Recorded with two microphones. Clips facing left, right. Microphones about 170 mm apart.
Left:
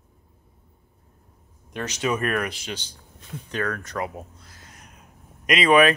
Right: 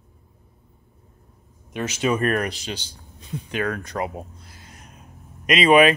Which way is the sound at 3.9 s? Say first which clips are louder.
Right 2 dB; 20° right (ahead or behind).